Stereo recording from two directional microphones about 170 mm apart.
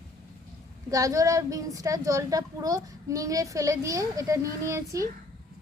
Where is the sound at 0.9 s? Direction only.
20° right (ahead or behind).